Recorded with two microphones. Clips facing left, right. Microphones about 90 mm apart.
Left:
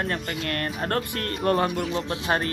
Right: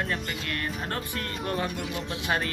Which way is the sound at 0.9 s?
50° left (ahead or behind).